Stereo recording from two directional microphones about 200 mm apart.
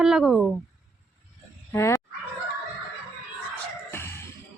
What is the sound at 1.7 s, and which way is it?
Speech, 15° left (ahead or behind).